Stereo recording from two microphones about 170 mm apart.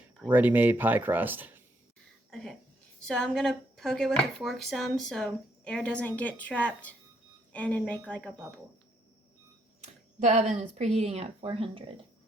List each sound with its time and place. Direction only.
0.3 s speech: 10° right (ahead or behind)
2.3 s a woman's voice: 5° left (ahead or behind)
9.8 s speech: 45° right (ahead or behind)